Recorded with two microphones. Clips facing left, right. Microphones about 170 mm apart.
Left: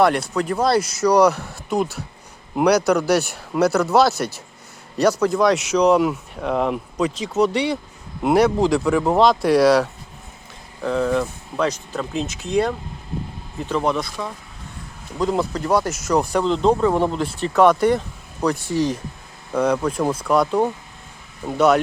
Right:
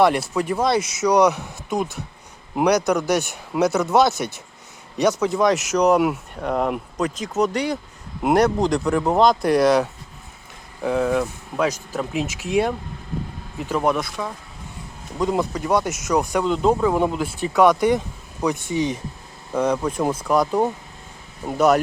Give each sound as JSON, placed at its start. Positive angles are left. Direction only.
{"t": 0.0, "sound": "speech", "side_deg": 0}
{"t": 5.2, "sound": "speech", "side_deg": 0}
{"t": 17.7, "sound": "speech", "side_deg": -15}